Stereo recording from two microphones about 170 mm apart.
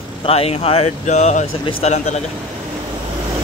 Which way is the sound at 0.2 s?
35° left (ahead or behind).